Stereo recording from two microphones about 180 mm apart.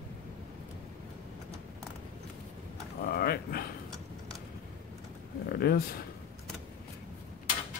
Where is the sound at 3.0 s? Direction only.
55° left (ahead or behind).